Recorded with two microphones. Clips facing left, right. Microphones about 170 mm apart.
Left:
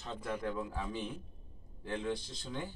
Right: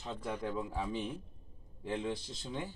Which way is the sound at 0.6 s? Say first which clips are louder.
Right 2 dB; 20° right (ahead or behind).